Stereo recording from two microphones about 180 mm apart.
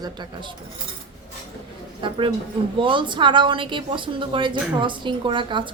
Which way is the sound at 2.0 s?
25° right (ahead or behind).